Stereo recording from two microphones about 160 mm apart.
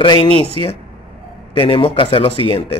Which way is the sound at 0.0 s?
30° left (ahead or behind).